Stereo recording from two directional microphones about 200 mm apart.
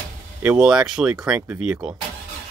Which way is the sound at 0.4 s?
5° right (ahead or behind).